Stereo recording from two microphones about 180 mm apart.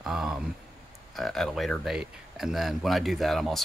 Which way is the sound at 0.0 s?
Centre (ahead or behind).